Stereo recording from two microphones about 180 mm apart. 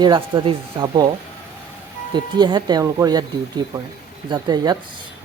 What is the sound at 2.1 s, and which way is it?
Speech, 25° right (ahead or behind).